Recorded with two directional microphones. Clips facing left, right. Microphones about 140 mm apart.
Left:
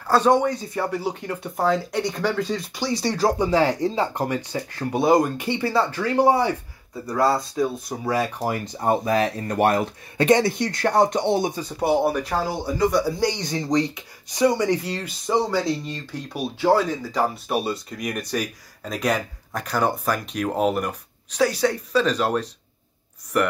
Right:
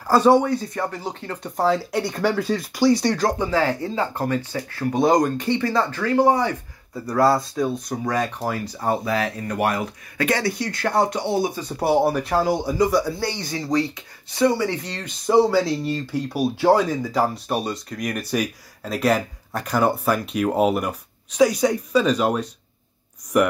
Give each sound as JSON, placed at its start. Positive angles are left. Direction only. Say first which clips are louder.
{"t": 0.0, "sound": "speech", "louder": "right 2 dB", "side_deg": -10}
{"t": 0.7, "sound": "speech", "louder": "left 2 dB", "side_deg": 10}
{"t": 1.6, "sound": "speech", "louder": "right 1 dB", "side_deg": -5}
{"t": 3.1, "sound": "speech", "louder": "left 1 dB", "side_deg": 10}
{"t": 7.1, "sound": "speech", "louder": "right 3 dB", "side_deg": 0}
{"t": 8.5, "sound": "speech", "louder": "left 1 dB", "side_deg": 20}
{"t": 11.8, "sound": "speech", "louder": "right 1 dB", "side_deg": 0}
{"t": 13.2, "sound": "speech", "louder": "left 3 dB", "side_deg": 20}
{"t": 15.2, "sound": "speech", "louder": "right 5 dB", "side_deg": -5}
{"t": 17.5, "sound": "speech", "louder": "even", "side_deg": 5}